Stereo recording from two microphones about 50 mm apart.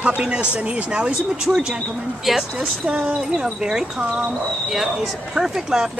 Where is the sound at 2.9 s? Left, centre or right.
Right.